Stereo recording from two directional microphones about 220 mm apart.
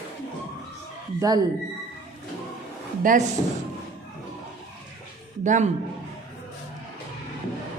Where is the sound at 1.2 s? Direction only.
15° right (ahead or behind).